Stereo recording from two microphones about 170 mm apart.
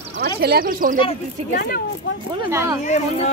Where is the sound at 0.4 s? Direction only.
65° right (ahead or behind).